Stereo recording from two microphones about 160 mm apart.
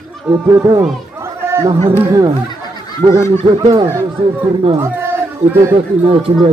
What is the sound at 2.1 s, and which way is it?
Speech, 25° right (ahead or behind).